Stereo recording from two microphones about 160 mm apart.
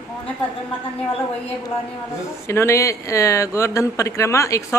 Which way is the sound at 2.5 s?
15° left (ahead or behind).